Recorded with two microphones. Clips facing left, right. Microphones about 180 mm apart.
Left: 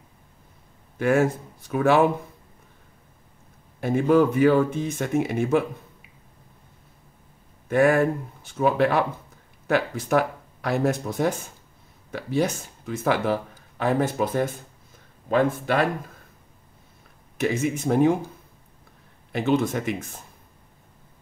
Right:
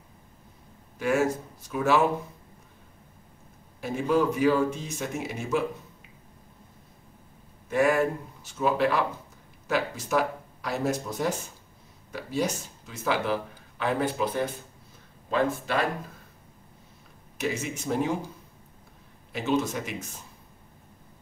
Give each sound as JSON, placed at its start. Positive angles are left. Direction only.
{"t": 0.9, "sound": "speech", "side_deg": 55}
{"t": 3.8, "sound": "speech", "side_deg": 55}
{"t": 7.7, "sound": "speech", "side_deg": 55}
{"t": 17.4, "sound": "speech", "side_deg": 55}
{"t": 19.3, "sound": "speech", "side_deg": 55}